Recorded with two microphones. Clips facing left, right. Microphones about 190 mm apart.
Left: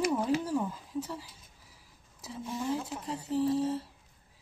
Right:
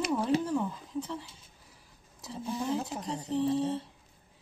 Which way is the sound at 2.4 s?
35° right (ahead or behind).